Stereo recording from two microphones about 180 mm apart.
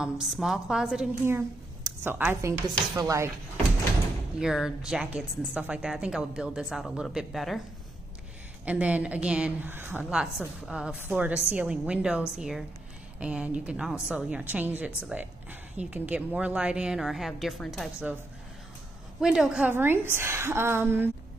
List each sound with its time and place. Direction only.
0.0 s a woman's voice: 5° right (ahead or behind); by 3.3 s 20° right (ahead or behind)
4.4 s a woman's voice: 5° right (ahead or behind)
8.6 s a woman's voice: 5° right (ahead or behind)
19.2 s a woman's voice: 5° right (ahead or behind)